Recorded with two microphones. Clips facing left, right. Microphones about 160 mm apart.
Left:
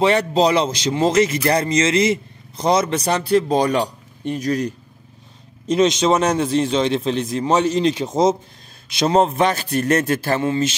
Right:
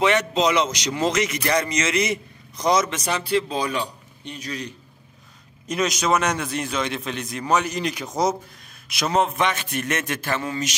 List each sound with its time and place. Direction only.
0.0 s a man's voice: 35° left (ahead or behind)
5.7 s a man's voice: 25° left (ahead or behind)